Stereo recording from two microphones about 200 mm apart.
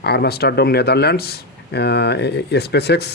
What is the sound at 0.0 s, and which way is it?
Speech, 55° left (ahead or behind).